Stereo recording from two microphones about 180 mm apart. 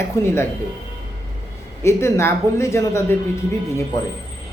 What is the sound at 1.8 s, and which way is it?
Speech, 15° left (ahead or behind).